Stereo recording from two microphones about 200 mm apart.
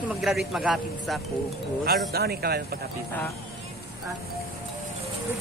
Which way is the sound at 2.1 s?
50° right (ahead or behind).